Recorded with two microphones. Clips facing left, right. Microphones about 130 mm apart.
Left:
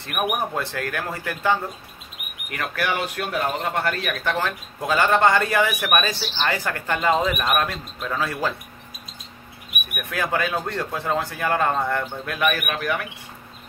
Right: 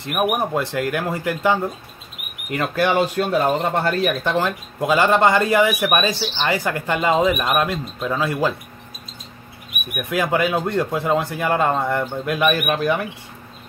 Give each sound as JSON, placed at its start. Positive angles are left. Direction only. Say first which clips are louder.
{"t": 0.0, "sound": "speech", "louder": "right 4 dB", "side_deg": -20}
{"t": 9.9, "sound": "speech", "louder": "right 5 dB", "side_deg": -15}